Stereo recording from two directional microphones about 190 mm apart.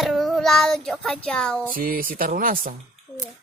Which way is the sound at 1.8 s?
50° right (ahead or behind).